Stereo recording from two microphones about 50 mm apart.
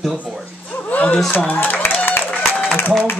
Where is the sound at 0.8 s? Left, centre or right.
Left.